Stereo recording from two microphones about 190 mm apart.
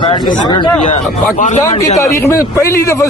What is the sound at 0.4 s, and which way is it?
Speech, 20° left (ahead or behind).